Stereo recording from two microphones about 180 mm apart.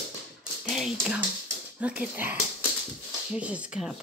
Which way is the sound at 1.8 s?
5° right (ahead or behind).